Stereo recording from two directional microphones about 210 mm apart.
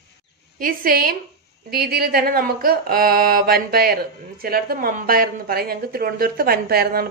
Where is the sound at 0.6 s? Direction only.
45° right (ahead or behind).